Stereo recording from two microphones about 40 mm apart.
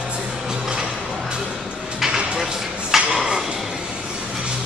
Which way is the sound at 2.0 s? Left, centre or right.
Centre.